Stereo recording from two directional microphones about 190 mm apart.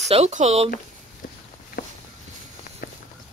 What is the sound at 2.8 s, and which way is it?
Walk, 50° left (ahead or behind).